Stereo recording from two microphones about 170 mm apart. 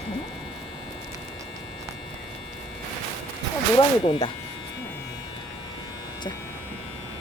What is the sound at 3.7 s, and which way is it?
Speech, 30° left (ahead or behind).